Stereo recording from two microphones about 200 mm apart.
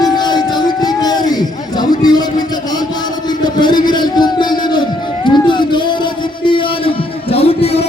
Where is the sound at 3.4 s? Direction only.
20° left (ahead or behind).